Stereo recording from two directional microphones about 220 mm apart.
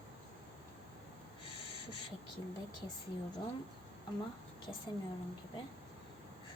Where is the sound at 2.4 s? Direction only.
20° left (ahead or behind).